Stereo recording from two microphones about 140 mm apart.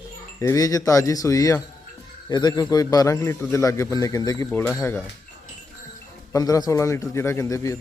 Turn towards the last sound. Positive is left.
turn(degrees=20)  # may be behind; listen again after turning